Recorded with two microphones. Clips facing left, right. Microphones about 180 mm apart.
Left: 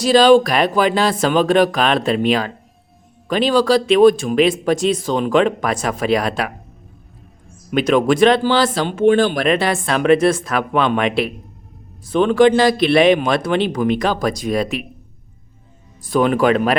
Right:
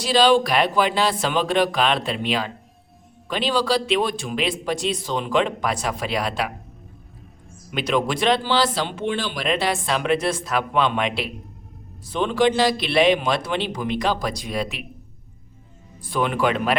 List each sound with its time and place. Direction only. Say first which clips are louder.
0.0 s speech: left 6 dB; 45° left (ahead or behind)
7.7 s speech: left 8 dB; 50° left (ahead or behind)
16.0 s speech: left 7 dB; 40° left (ahead or behind)